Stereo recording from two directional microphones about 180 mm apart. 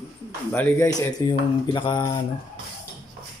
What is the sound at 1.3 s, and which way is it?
Mantra, 25° left (ahead or behind).